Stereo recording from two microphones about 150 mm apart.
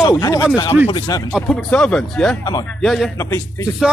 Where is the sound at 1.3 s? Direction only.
5° left (ahead or behind).